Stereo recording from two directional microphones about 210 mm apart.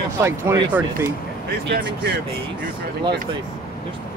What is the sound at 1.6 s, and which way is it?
Speech, 50° right (ahead or behind).